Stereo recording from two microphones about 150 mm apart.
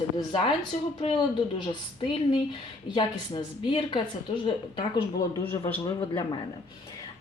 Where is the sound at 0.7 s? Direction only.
55° left (ahead or behind).